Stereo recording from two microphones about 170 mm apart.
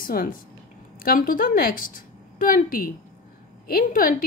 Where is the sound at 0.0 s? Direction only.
55° left (ahead or behind).